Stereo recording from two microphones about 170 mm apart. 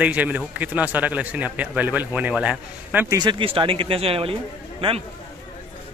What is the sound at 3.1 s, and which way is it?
Speech, 30° right (ahead or behind).